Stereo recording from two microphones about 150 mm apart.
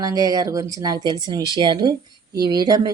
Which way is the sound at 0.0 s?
25° right (ahead or behind).